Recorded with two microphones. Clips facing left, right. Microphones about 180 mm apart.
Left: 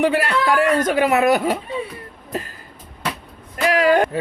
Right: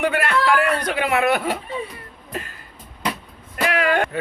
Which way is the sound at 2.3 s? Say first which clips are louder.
Left 4 dB; 40° left (ahead or behind).